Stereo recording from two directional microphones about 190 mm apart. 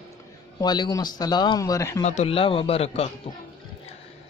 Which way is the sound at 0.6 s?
20° left (ahead or behind).